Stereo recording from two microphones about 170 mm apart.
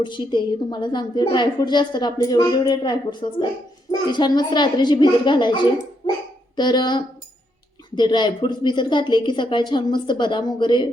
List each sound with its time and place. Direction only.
0.0 s a woman's voice: 25° left (ahead or behind)